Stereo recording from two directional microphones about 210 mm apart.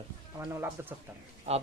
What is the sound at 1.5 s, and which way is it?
Speech, 30° right (ahead or behind).